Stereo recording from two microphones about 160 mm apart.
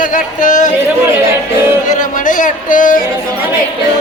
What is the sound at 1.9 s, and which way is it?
Speech, 55° left (ahead or behind).